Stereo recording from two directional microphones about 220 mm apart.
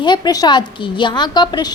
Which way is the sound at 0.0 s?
20° left (ahead or behind).